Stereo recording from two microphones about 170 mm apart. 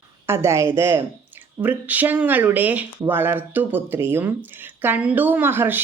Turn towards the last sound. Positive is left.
turn(degrees=-10)  # may be behind; listen again after turning